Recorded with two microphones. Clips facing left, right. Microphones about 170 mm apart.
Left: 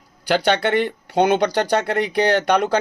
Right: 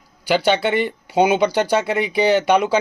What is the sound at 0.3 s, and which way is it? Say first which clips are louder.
A man's voice: right 1 dB; 5° right (ahead or behind).